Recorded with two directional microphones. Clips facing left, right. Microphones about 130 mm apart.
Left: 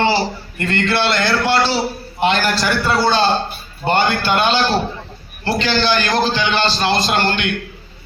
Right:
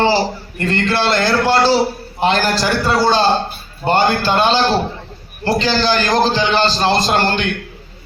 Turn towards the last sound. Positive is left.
turn(degrees=-35)  # may be behind; listen again after turning